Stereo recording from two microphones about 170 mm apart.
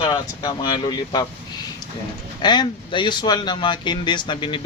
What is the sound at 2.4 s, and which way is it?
Speech, 25° left (ahead or behind).